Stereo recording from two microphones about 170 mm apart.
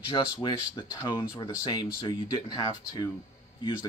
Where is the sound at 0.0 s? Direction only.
30° left (ahead or behind).